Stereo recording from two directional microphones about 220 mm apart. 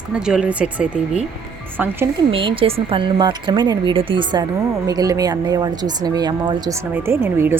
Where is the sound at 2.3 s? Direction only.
25° right (ahead or behind).